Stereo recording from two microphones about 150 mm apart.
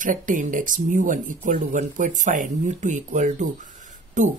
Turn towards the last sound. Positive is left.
turn(degrees=-55)  # may be behind; listen again after turning